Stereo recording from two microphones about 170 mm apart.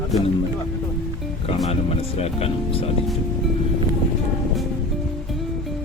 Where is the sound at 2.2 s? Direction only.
35° left (ahead or behind).